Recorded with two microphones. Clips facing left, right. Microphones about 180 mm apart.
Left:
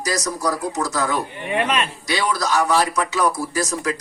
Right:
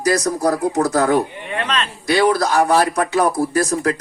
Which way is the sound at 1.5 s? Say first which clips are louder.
Left 2 dB; 10° left (ahead or behind).